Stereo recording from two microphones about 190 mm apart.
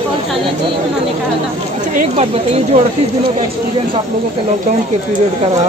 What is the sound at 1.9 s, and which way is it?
Speech, 40° right (ahead or behind).